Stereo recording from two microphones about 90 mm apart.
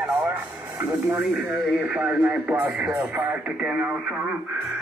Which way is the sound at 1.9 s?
15° right (ahead or behind).